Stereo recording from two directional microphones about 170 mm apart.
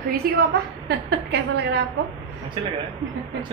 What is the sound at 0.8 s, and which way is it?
Speech, 80° right.